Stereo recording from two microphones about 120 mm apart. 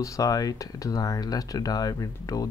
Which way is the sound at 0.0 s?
30° left (ahead or behind).